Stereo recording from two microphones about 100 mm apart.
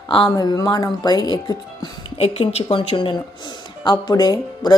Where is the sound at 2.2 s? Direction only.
80° left; by 3.1 s 55° left (ahead or behind).